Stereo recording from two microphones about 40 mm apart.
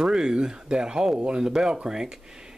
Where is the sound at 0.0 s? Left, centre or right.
Centre.